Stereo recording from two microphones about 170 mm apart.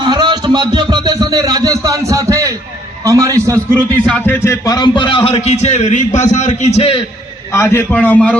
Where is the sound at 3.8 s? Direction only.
10° left (ahead or behind); by 7.0 s 35° left (ahead or behind).